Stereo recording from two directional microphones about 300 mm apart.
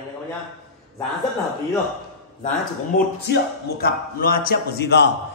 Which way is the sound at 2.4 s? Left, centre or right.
Left.